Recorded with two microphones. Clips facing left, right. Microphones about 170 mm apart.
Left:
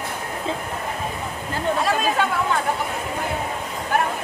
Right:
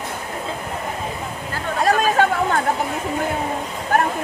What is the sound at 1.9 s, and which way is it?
Chatter, 45° right (ahead or behind).